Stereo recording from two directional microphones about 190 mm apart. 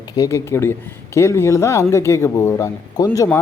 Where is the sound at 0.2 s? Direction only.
15° left (ahead or behind).